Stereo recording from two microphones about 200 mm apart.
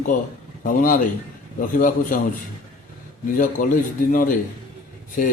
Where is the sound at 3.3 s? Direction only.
40° left (ahead or behind).